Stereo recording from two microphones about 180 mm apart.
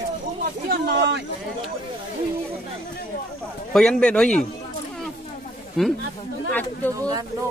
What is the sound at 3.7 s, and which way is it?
Speech, 5° left (ahead or behind).